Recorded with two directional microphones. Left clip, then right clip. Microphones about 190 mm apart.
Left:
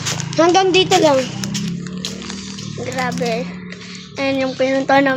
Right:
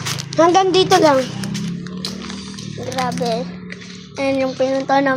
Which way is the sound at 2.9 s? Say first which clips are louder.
Even; centre (ahead or behind).